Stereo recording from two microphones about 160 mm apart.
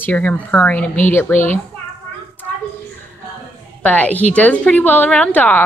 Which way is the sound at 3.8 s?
10° left (ahead or behind).